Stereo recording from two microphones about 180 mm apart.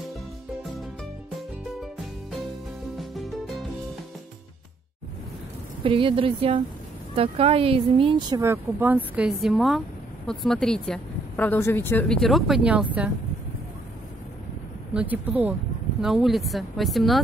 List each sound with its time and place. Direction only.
3.0 s music: centre (ahead or behind)
5.9 s speech: 30° right (ahead or behind); by 13.1 s 5° right (ahead or behind)
15.0 s speech: 10° right (ahead or behind)